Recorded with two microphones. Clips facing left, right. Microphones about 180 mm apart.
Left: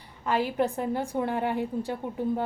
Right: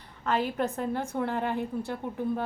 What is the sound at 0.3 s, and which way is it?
A woman's voice, 10° left (ahead or behind).